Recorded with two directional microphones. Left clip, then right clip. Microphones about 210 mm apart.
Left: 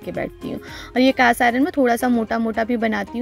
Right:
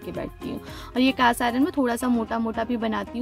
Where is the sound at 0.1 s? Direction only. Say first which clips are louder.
Left 6 dB; 10° left (ahead or behind).